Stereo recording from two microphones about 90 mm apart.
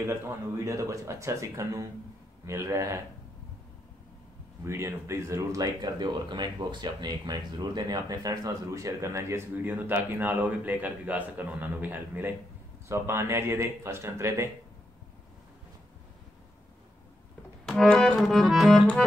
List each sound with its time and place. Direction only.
0.7 s speech: 35° right (ahead or behind)
4.6 s speech: 30° right (ahead or behind)
12.8 s speech: 30° right (ahead or behind)
17.6 s music: 5° left (ahead or behind)
18.2 s music: centre (ahead or behind)